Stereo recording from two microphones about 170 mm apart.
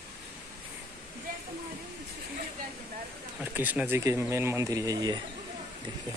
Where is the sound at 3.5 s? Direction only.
10° right (ahead or behind).